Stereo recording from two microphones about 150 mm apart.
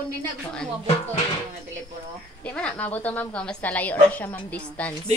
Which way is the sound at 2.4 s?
10° left (ahead or behind).